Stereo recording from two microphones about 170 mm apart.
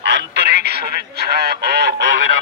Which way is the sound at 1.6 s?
80° right.